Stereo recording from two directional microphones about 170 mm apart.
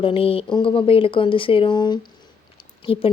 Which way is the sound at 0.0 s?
30° left (ahead or behind).